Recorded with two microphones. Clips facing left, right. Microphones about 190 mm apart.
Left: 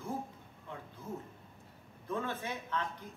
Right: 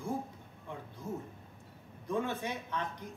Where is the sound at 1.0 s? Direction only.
10° right (ahead or behind).